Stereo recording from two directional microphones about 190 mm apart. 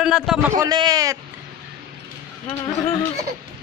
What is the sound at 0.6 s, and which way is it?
Speech, 20° right (ahead or behind).